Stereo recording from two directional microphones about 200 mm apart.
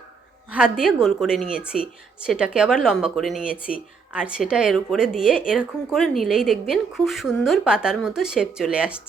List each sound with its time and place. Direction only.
0.5 s a woman's voice: 5° right (ahead or behind)